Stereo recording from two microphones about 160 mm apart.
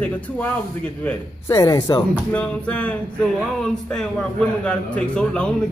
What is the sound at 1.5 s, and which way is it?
Speech, 20° left (ahead or behind).